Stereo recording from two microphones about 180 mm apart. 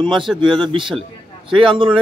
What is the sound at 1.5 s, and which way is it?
Speech, 30° right (ahead or behind).